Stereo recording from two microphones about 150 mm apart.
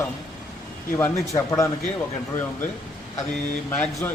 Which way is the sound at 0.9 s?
20° left (ahead or behind).